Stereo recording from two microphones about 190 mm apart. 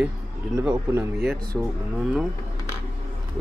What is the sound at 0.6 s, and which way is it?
Speech, 10° right (ahead or behind).